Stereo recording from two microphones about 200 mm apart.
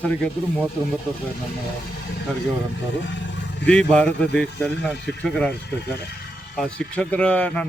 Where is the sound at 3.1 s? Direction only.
65° left (ahead or behind).